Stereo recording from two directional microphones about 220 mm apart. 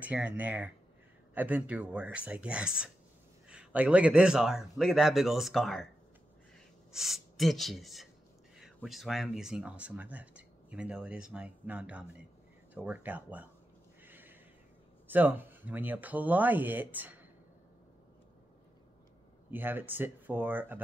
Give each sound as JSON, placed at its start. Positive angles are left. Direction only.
{"t": 0.0, "sound": "speech", "side_deg": -5}
{"t": 6.9, "sound": "speech", "side_deg": 0}
{"t": 14.0, "sound": "a sound", "side_deg": -10}
{"t": 15.0, "sound": "speech", "side_deg": -10}
{"t": 19.5, "sound": "speech", "side_deg": -10}